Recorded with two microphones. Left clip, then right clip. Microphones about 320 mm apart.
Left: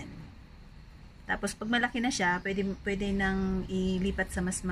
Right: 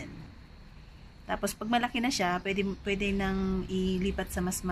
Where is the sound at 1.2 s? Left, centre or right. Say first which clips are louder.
Even; centre.